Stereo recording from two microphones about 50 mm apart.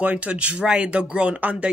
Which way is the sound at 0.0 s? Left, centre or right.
Right.